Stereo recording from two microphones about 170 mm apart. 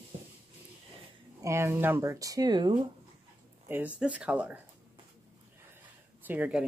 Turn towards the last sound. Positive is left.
turn(degrees=-10)  # may be behind; listen again after turning